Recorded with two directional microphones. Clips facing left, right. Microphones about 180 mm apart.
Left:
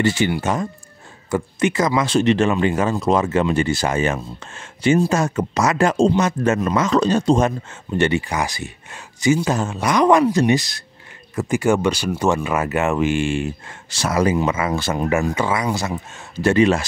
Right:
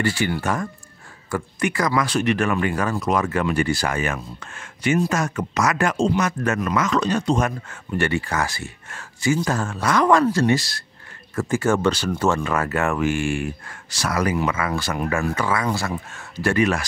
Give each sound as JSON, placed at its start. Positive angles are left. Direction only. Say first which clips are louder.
{"t": 0.0, "sound": "speech", "louder": "left 4 dB", "side_deg": 20}